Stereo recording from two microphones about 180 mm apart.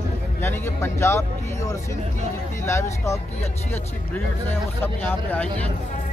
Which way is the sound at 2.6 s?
15° left (ahead or behind).